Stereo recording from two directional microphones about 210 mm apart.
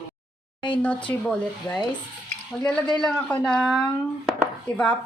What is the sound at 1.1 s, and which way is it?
Speech, 5° left (ahead or behind).